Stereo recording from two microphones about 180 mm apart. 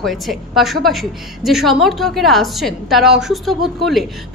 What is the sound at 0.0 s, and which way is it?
A woman's voice, centre (ahead or behind).